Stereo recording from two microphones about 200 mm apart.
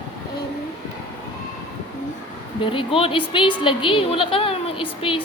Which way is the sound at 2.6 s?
25° left (ahead or behind).